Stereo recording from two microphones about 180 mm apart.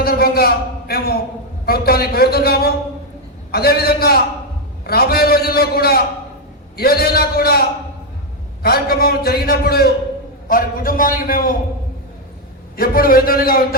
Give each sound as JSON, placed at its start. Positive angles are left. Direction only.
{"t": 0.0, "sound": "a man's voice", "side_deg": 60}
{"t": 12.7, "sound": "a man's voice", "side_deg": 55}